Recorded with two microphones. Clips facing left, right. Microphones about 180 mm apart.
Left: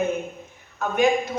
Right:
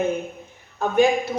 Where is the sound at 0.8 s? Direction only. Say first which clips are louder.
Right 3 dB; 30° right (ahead or behind).